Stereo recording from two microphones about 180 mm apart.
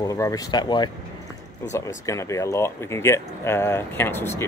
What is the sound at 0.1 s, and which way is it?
Speech, 20° left (ahead or behind).